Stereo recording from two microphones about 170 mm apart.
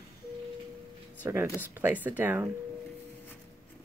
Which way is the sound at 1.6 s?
10° right (ahead or behind).